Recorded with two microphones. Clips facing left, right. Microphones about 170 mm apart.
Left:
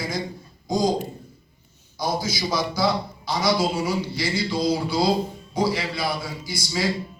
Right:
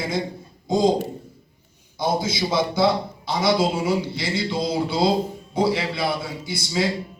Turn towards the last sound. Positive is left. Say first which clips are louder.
# right 3 dB
turn(degrees=-25)  # may be behind; listen again after turning